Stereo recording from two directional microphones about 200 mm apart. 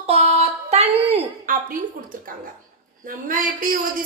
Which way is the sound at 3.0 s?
45° right (ahead or behind).